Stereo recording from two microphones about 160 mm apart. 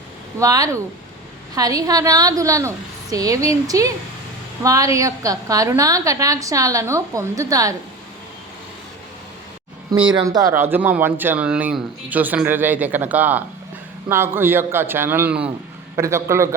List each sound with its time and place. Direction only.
0.3 s a woman's voice: 20° right (ahead or behind)
9.9 s speech: 30° right (ahead or behind)